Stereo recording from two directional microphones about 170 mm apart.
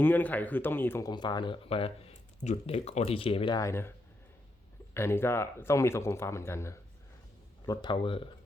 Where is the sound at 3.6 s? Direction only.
15° left (ahead or behind).